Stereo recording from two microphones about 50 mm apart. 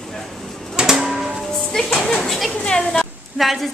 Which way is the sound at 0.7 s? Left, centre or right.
Centre.